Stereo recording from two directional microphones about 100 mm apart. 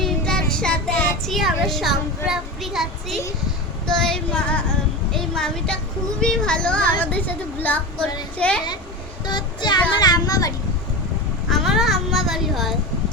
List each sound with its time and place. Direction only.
0.0 s child singing: 5° left (ahead or behind)
3.8 s female singing: 5° left (ahead or behind)
5.1 s a woman's voice: 5° left (ahead or behind)
6.1 s female singing: 5° left (ahead or behind)
9.2 s child singing: 45° left (ahead or behind)
10.0 s a child's voice: 40° left (ahead or behind)
11.4 s a child's voice: centre (ahead or behind)